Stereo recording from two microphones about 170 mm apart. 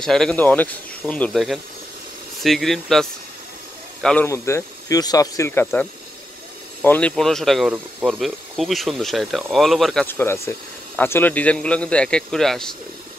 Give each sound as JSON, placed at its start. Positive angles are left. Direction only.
{"t": 0.0, "sound": "speech", "side_deg": 5}
{"t": 4.3, "sound": "a man's voice", "side_deg": 15}
{"t": 10.0, "sound": "a man's voice", "side_deg": 15}